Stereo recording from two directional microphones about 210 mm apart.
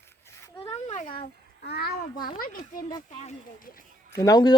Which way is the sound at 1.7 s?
50° left (ahead or behind).